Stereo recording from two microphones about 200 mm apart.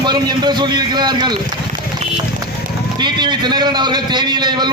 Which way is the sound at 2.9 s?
20° right (ahead or behind).